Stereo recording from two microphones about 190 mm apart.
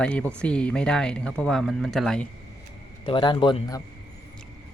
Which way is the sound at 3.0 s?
25° left (ahead or behind).